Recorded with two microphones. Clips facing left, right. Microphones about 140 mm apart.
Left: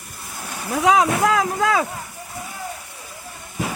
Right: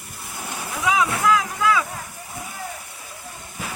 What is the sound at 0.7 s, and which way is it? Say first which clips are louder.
Vehicle: left 5 dB; 60° left (ahead or behind).